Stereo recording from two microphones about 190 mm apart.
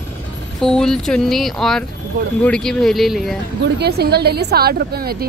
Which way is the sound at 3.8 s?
60° right (ahead or behind).